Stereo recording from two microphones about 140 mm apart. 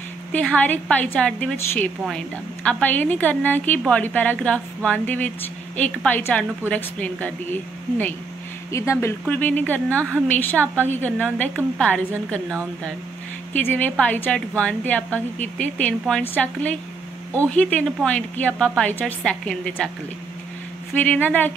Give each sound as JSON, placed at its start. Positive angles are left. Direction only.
{"t": 0.3, "sound": "a woman's voice", "side_deg": 10}
{"t": 20.9, "sound": "a woman's voice", "side_deg": 10}